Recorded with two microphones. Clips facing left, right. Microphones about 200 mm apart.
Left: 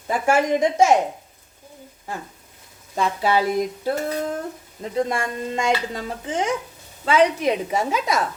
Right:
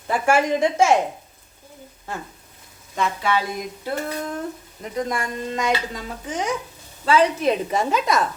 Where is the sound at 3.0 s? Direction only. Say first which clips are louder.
Left 2 dB; 35° left (ahead or behind).